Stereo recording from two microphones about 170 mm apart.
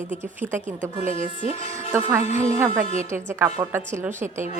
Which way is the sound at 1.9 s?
10° right (ahead or behind).